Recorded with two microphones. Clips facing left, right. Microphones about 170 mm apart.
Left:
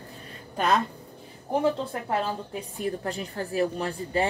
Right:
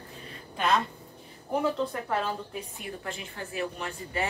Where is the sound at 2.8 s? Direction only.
40° left (ahead or behind).